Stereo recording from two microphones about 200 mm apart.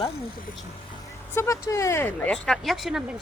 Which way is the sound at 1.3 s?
15° left (ahead or behind).